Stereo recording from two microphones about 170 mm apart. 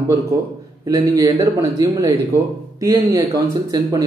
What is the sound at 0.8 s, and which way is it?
Speech, 20° right (ahead or behind).